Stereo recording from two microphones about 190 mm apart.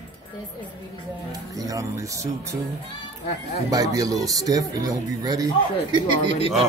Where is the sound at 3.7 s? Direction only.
20° right (ahead or behind).